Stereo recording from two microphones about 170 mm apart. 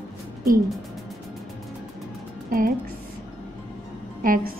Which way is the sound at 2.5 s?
55° right (ahead or behind).